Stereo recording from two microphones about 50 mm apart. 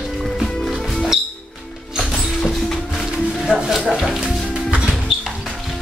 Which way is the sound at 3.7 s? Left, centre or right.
Centre.